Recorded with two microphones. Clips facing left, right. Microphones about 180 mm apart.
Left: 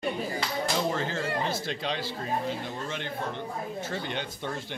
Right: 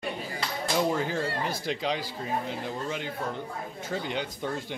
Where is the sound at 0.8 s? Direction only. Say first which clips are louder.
Right 7 dB; 10° right (ahead or behind).